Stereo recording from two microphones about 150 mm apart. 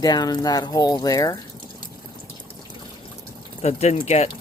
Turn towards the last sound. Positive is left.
turn(degrees=45)  # may be behind; listen again after turning